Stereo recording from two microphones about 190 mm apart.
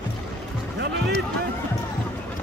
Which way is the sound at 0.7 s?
65° right (ahead or behind).